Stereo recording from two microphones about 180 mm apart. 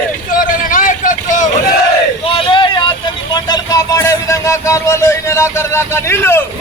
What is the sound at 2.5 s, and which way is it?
Vehicle, 25° left (ahead or behind).